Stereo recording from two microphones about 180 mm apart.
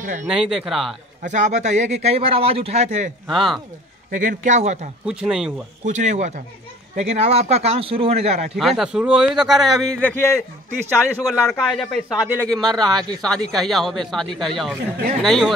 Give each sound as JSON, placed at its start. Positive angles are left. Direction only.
{"t": 0.0, "sound": "speech", "side_deg": -45}
{"t": 0.3, "sound": "speech", "side_deg": -5}
{"t": 1.2, "sound": "speech", "side_deg": -40}
{"t": 3.3, "sound": "speech", "side_deg": 0}
{"t": 4.1, "sound": "speech", "side_deg": -45}
{"t": 5.0, "sound": "speech", "side_deg": -5}
{"t": 5.9, "sound": "speech", "side_deg": -40}
{"t": 8.5, "sound": "speech", "side_deg": 0}
{"t": 10.0, "sound": "a man's voice", "side_deg": 15}
{"t": 11.2, "sound": "speech", "side_deg": 0}
{"t": 12.7, "sound": "speech", "side_deg": -25}
{"t": 13.2, "sound": "speech", "side_deg": 5}